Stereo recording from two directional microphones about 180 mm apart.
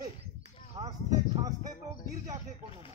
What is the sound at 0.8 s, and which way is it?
Speech, 20° right (ahead or behind).